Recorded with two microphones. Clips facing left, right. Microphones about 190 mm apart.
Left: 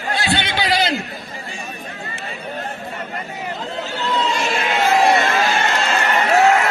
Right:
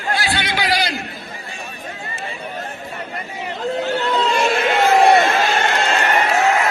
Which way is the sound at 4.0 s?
55° right (ahead or behind).